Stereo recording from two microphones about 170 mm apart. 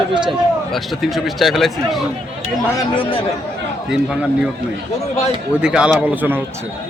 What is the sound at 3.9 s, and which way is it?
Speech, 5° right (ahead or behind).